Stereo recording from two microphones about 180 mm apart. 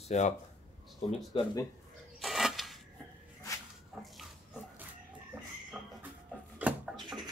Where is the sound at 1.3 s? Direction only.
20° left (ahead or behind).